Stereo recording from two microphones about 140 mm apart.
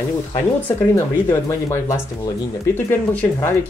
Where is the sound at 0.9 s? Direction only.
20° left (ahead or behind).